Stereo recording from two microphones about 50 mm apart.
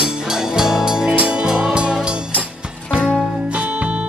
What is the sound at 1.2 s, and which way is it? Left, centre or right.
Music, right.